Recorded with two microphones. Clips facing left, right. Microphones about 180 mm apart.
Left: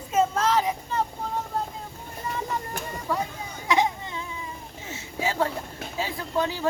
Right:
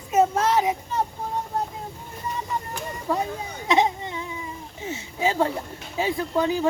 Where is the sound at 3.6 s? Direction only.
20° right (ahead or behind).